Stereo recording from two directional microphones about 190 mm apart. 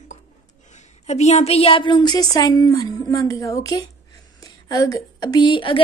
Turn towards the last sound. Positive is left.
turn(degrees=25)  # may be behind; listen again after turning